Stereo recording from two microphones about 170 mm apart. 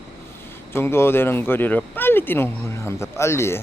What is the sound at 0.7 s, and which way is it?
Speech, 15° left (ahead or behind).